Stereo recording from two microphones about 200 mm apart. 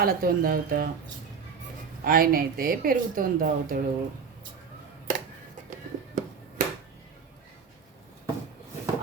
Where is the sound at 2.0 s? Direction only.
45° right (ahead or behind).